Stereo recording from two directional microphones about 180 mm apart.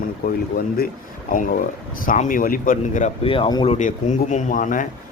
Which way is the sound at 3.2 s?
30° left (ahead or behind).